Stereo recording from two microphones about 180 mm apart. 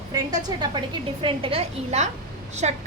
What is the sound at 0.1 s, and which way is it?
A woman's voice, 20° right (ahead or behind).